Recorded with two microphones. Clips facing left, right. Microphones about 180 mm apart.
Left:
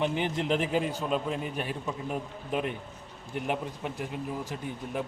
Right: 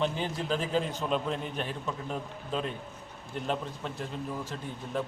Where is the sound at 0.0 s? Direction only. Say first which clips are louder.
Left 2 dB; 20° left (ahead or behind).